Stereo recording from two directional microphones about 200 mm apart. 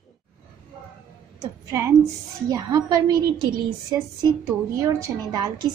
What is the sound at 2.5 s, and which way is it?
A woman's voice, 15° right (ahead or behind).